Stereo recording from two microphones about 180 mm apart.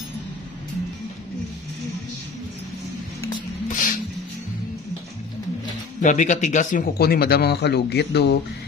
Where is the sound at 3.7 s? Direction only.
45° left (ahead or behind).